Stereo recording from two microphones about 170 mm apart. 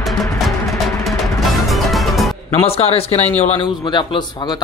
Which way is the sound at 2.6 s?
35° left (ahead or behind).